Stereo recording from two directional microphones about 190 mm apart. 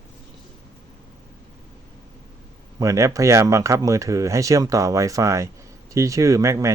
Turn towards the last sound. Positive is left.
turn(degrees=-15)  # may be behind; listen again after turning